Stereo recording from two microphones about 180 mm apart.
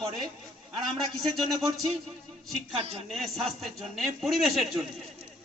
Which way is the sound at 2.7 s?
35° right (ahead or behind).